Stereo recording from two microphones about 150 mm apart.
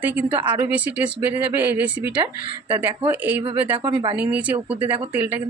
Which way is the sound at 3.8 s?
30° right (ahead or behind).